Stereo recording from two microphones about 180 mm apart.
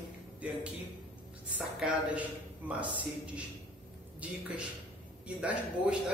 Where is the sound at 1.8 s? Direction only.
5° right (ahead or behind).